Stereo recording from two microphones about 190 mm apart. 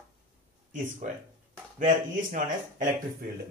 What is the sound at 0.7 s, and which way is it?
Speech, 45° right (ahead or behind).